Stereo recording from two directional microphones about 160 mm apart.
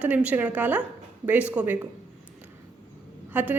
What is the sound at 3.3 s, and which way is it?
Speech, 10° right (ahead or behind).